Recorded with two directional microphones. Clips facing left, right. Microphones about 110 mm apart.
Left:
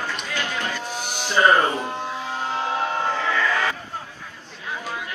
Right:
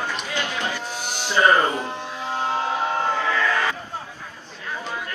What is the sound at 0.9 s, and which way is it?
Music, 50° left (ahead or behind).